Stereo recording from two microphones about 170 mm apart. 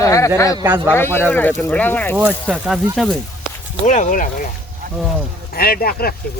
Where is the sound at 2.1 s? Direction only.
5° right (ahead or behind).